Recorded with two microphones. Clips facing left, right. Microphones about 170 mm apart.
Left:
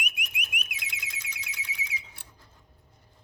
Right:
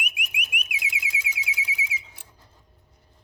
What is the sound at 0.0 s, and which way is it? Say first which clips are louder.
Alarm: right 2 dB; 10° right (ahead or behind).